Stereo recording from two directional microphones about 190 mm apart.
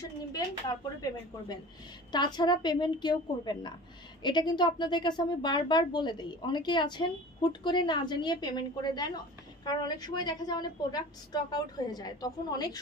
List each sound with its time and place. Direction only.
0.0 s a woman's voice: 20° left (ahead or behind)